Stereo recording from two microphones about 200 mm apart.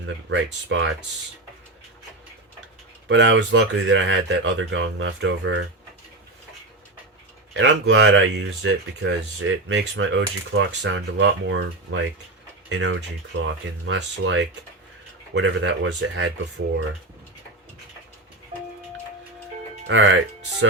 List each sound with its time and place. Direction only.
0.0 s speech: 65° right (ahead or behind)
3.1 s speech: 70° right (ahead or behind)
7.5 s speech: 65° right (ahead or behind)
19.9 s speech: 65° right (ahead or behind)